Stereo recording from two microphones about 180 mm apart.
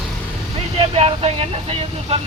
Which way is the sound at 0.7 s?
30° right (ahead or behind).